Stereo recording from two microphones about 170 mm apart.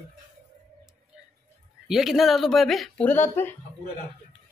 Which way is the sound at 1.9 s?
Centre (ahead or behind).